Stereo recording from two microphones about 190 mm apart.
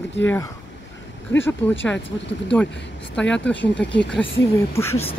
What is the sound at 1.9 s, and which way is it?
Speech, 70° left (ahead or behind).